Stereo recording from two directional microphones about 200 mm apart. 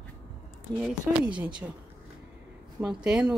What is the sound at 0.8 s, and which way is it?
Speech, 5° right (ahead or behind).